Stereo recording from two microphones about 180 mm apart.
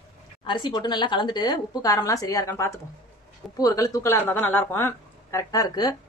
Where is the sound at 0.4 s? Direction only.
25° left (ahead or behind).